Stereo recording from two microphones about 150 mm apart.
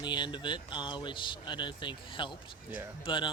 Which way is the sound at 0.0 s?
30° left (ahead or behind).